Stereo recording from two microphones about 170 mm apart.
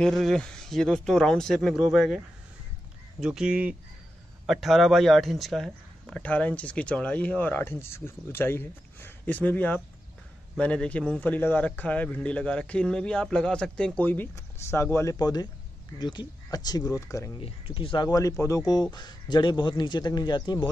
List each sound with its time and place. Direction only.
0.0 s a man's voice: centre (ahead or behind); by 17.3 s 20° left (ahead or behind)
17.4 s a man's voice: 30° left (ahead or behind)